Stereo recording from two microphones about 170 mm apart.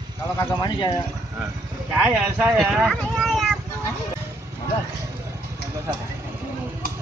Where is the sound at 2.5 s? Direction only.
Centre (ahead or behind).